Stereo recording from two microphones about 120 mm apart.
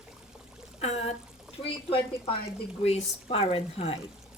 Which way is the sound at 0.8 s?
60° left (ahead or behind).